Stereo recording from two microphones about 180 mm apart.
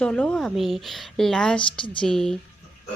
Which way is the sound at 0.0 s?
5° left (ahead or behind).